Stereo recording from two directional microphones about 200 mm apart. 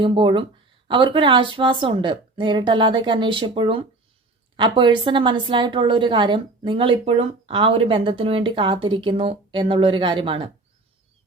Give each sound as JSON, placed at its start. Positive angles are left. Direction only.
{"t": 0.0, "sound": "a woman's voice", "side_deg": -25}